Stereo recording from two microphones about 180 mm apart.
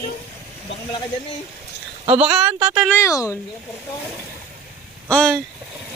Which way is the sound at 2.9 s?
15° left (ahead or behind).